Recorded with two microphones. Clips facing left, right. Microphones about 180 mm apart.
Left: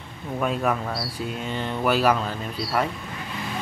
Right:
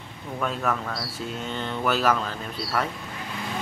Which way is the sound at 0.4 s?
15° left (ahead or behind).